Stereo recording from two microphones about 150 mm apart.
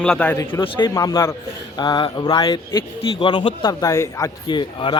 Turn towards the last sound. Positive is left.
turn(degrees=30)  # may be behind; listen again after turning